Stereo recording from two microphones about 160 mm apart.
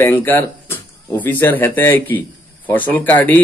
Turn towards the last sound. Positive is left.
turn(degrees=10)  # may be behind; listen again after turning